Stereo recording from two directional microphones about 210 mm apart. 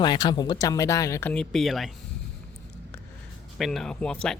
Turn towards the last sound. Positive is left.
turn(degrees=5)  # may be behind; listen again after turning